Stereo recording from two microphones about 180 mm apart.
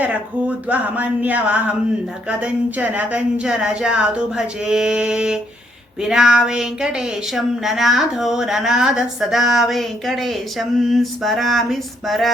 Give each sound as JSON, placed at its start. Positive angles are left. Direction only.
{"t": 0.0, "sound": "speech", "side_deg": -10}